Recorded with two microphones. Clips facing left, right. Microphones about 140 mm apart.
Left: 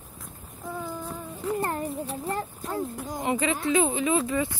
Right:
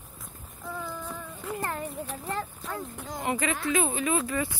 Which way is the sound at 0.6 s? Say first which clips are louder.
Left 2 dB; 20° left (ahead or behind).